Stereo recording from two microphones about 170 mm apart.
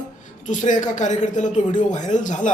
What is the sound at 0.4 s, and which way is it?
Speech, 45° left (ahead or behind).